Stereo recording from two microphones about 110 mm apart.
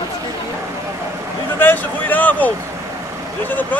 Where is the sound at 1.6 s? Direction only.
15° left (ahead or behind).